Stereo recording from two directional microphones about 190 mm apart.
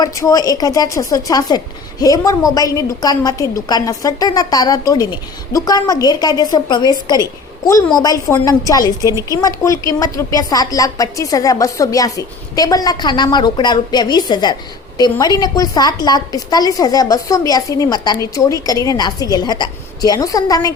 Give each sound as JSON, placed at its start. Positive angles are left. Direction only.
{"t": 0.0, "sound": "a woman's voice", "side_deg": 20}